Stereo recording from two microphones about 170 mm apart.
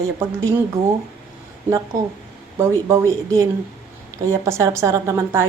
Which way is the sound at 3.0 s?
20° right (ahead or behind).